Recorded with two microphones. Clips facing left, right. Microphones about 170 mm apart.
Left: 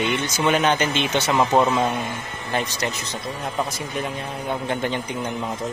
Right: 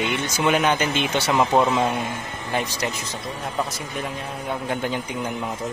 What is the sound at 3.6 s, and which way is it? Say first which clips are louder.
Speech: left 1 dB; centre (ahead or behind).